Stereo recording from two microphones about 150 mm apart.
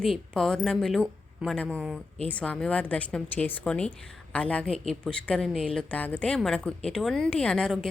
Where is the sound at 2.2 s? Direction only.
10° left (ahead or behind).